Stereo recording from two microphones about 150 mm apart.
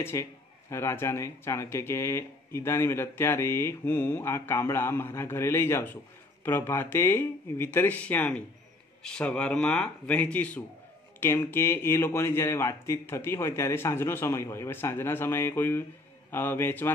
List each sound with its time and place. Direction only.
0.0 s a man's voice: 20° left (ahead or behind)